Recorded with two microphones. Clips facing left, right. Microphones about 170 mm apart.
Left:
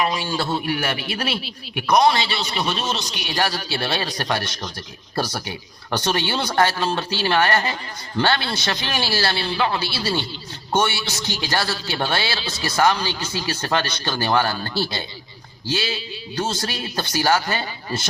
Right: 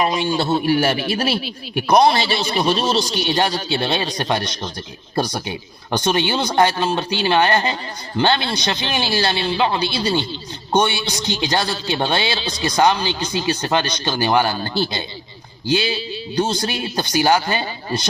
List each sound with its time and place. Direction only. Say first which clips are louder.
0.0 s a man's voice: right 4 dB; 25° right (ahead or behind)
2.2 s a man's voice: right 6 dB; 45° right (ahead or behind); by 14.7 s 20° right (ahead or behind)
15.7 s a man's voice: right 6 dB; 25° right (ahead or behind)